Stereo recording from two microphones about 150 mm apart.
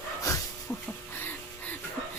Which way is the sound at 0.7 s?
15° left (ahead or behind).